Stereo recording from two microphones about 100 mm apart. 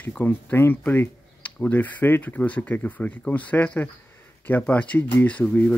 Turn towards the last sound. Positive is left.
turn(degrees=15)  # may be behind; listen again after turning